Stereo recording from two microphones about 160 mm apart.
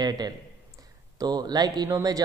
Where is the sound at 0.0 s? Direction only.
25° right (ahead or behind).